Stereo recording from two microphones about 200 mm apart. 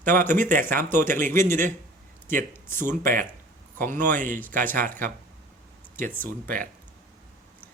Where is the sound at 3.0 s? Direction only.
45° right (ahead or behind).